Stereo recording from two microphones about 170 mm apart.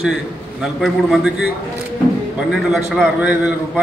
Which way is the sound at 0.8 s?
5° right (ahead or behind).